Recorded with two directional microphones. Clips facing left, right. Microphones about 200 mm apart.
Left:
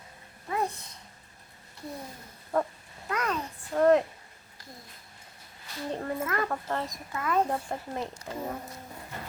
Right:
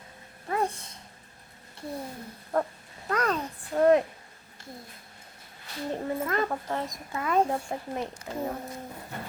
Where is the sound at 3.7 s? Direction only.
5° right (ahead or behind).